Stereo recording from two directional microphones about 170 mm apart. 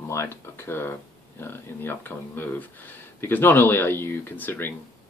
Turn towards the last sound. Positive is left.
turn(degrees=10)  # may be behind; listen again after turning